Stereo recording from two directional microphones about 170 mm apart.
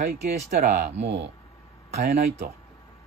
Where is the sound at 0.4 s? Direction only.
40° right (ahead or behind).